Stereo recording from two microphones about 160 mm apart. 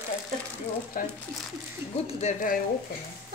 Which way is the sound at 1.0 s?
60° left (ahead or behind).